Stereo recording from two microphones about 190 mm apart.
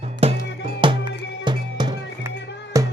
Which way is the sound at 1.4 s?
25° right (ahead or behind).